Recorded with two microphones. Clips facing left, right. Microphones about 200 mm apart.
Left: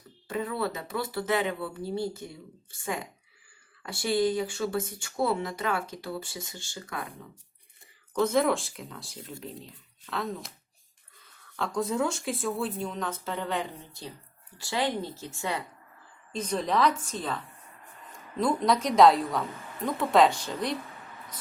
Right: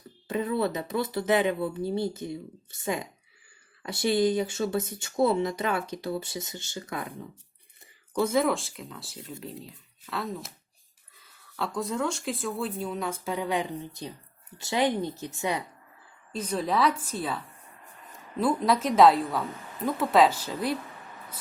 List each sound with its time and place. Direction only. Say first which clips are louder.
0.3 s speech: right 3 dB; 20° right (ahead or behind)
8.1 s a woman's voice: even; 10° right (ahead or behind)